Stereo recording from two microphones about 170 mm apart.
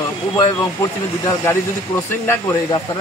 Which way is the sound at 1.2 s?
15° left (ahead or behind).